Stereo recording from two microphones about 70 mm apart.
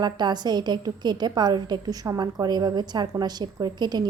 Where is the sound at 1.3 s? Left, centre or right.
Right.